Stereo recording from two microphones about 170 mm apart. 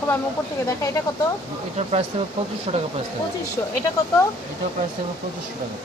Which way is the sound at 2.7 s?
35° right (ahead or behind).